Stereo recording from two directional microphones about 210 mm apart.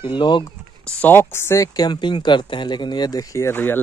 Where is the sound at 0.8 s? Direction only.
10° left (ahead or behind).